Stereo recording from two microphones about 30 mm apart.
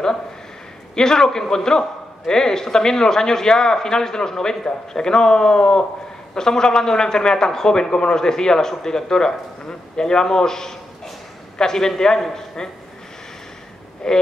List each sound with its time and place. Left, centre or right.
0.9 s a man's voice: centre
14.0 s a man's voice: left